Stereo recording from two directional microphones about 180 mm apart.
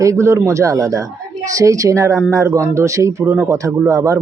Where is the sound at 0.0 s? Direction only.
15° right (ahead or behind).